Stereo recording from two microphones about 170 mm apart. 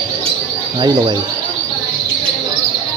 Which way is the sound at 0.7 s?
25° right (ahead or behind).